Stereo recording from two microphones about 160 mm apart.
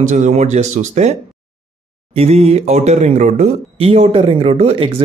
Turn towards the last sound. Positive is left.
turn(degrees=-35)  # may be behind; listen again after turning